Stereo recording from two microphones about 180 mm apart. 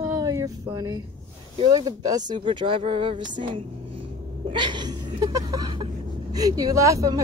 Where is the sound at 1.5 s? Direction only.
25° right (ahead or behind).